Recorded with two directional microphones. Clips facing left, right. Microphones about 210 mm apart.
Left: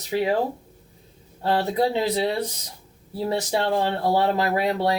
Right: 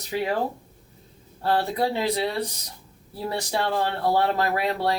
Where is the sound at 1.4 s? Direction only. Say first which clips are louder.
Left 2 dB; 20° left (ahead or behind).